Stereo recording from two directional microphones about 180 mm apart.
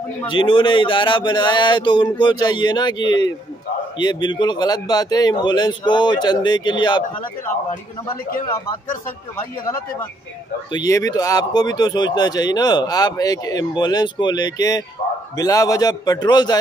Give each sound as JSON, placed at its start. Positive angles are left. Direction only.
{"t": 0.3, "sound": "speech", "side_deg": 30}
{"t": 8.5, "sound": "speech", "side_deg": 15}
{"t": 10.7, "sound": "speech", "side_deg": 20}